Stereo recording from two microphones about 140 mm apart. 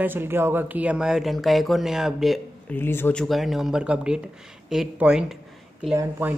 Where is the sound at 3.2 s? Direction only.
Centre (ahead or behind).